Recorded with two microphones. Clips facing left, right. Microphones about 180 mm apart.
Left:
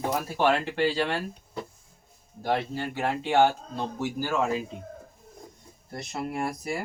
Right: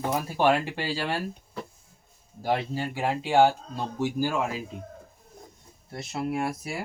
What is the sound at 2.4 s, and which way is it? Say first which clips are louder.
Speech: even; 10° right (ahead or behind).